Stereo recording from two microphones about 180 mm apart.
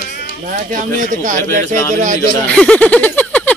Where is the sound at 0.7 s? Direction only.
45° right (ahead or behind).